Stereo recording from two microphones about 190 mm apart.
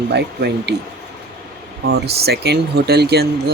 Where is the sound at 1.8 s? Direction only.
60° right (ahead or behind).